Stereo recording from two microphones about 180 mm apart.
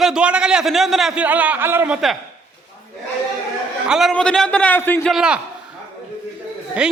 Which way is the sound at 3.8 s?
Centre (ahead or behind).